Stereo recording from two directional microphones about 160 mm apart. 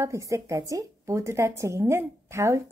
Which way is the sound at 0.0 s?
20° right (ahead or behind).